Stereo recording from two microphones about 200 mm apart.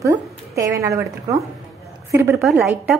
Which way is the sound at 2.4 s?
Centre (ahead or behind).